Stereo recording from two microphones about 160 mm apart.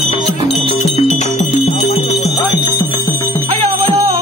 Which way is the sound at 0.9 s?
40° left (ahead or behind).